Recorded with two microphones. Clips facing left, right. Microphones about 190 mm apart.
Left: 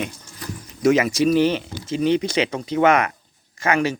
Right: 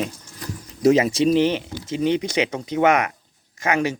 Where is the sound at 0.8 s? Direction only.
35° right (ahead or behind); by 3.9 s 15° right (ahead or behind).